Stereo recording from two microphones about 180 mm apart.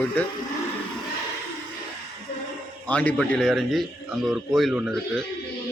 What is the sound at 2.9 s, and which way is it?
Speech, 5° left (ahead or behind).